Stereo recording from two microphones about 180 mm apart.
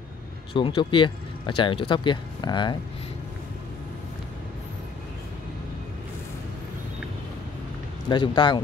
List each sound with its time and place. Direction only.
0.5 s speech: 30° left (ahead or behind)
8.1 s speech: 25° left (ahead or behind)